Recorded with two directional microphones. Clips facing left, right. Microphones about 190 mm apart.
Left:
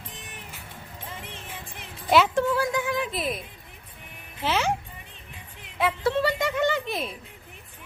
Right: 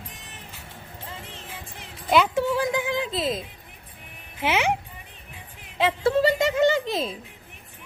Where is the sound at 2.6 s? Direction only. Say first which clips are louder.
Right 1 dB; 20° right (ahead or behind).